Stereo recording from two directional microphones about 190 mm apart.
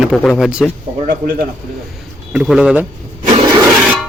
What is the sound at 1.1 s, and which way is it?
Speech, 50° right (ahead or behind).